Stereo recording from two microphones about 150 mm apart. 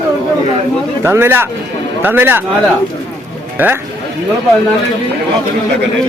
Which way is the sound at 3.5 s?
15° right (ahead or behind).